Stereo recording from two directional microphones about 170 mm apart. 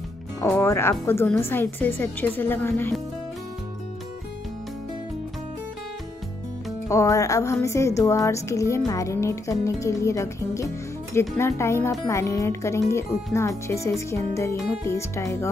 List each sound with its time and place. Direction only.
0.4 s speech: 15° left (ahead or behind)
6.9 s speech: 20° left (ahead or behind)